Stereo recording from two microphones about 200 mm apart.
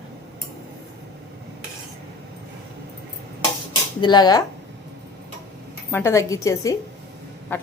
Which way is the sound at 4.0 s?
20° left (ahead or behind).